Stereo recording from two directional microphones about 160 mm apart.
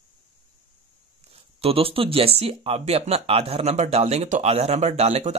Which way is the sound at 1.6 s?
35° right (ahead or behind).